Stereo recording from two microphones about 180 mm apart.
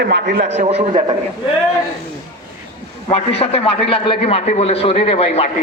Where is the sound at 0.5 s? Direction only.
40° right (ahead or behind).